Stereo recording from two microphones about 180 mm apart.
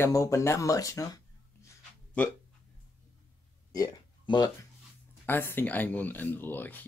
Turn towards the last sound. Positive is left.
turn(degrees=10)  # may be behind; listen again after turning